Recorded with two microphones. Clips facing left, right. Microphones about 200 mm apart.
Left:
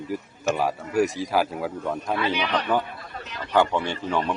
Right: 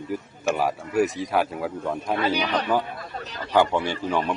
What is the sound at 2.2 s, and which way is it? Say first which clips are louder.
Speech: right 1 dB; 40° right (ahead or behind).